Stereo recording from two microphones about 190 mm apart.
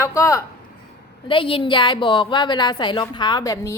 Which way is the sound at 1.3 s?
25° left (ahead or behind).